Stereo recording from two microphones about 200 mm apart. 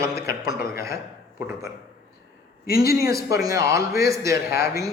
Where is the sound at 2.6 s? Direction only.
50° left (ahead or behind).